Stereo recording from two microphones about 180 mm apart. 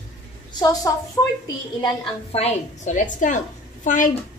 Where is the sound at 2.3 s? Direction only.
40° left (ahead or behind).